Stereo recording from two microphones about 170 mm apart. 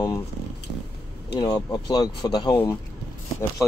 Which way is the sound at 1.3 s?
25° left (ahead or behind).